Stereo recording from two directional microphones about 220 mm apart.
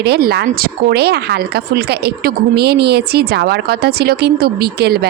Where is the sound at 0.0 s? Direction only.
45° right (ahead or behind).